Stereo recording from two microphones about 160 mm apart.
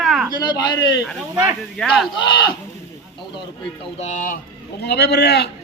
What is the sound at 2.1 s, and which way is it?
Speech, 30° left (ahead or behind).